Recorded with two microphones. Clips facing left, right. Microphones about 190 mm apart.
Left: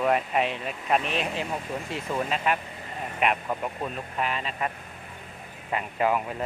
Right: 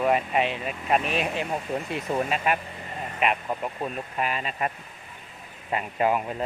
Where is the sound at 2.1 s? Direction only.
50° right (ahead or behind).